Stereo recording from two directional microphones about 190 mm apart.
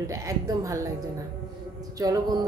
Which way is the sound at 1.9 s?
20° right (ahead or behind).